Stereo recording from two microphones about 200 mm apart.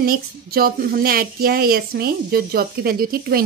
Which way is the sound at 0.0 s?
50° right (ahead or behind).